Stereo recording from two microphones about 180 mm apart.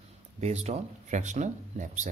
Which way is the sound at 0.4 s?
35° right (ahead or behind).